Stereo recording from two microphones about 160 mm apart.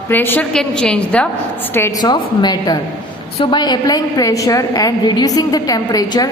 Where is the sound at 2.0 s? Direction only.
25° left (ahead or behind).